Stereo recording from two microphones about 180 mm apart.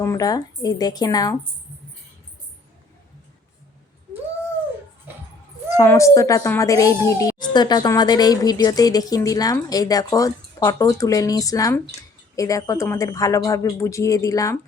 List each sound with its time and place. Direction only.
0.0 s a woman's voice: 20° left (ahead or behind)
5.7 s a woman's voice: 15° left (ahead or behind)